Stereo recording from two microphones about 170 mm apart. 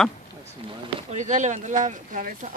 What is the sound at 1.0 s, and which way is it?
Speech, 45° right (ahead or behind).